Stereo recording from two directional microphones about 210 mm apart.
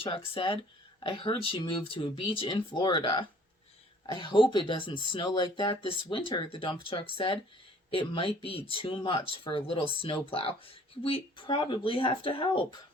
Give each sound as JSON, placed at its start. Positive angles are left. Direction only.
{"t": 0.0, "sound": "speech", "side_deg": 25}